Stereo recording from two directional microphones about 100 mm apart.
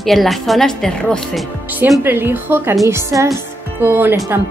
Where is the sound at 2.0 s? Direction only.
20° right (ahead or behind).